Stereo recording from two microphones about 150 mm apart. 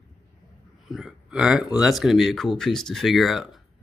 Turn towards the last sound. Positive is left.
turn(degrees=0)  # may be behind; listen again after turning